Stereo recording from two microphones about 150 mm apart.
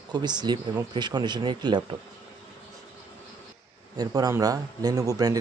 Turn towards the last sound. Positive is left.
turn(degrees=-25)  # may be behind; listen again after turning